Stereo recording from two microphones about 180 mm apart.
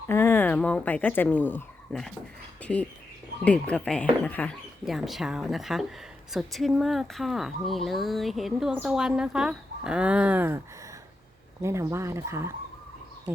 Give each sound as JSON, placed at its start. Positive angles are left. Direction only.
{"t": 0.1, "sound": "speech", "side_deg": 15}
{"t": 3.4, "sound": "speech", "side_deg": 5}
{"t": 11.6, "sound": "speech", "side_deg": -15}